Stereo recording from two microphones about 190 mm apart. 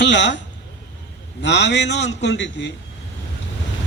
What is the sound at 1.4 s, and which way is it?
A man's voice, 65° left (ahead or behind).